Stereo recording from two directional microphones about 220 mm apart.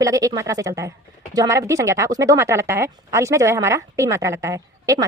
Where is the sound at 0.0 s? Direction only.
15° right (ahead or behind).